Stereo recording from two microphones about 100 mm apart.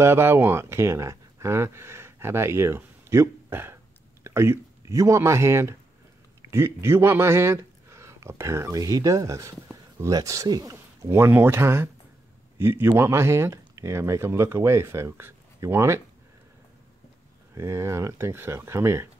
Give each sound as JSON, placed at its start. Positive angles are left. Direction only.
{"t": 0.0, "sound": "speech", "side_deg": -25}
{"t": 17.6, "sound": "speech", "side_deg": -30}